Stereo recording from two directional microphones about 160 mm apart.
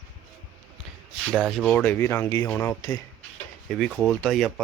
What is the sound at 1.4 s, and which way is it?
Speech, centre (ahead or behind).